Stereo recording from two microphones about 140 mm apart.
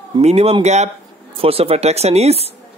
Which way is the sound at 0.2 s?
50° right (ahead or behind).